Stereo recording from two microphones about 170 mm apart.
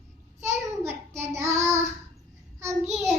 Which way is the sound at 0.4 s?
15° right (ahead or behind).